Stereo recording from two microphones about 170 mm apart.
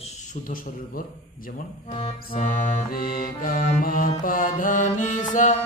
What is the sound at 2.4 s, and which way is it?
Music, 55° left (ahead or behind).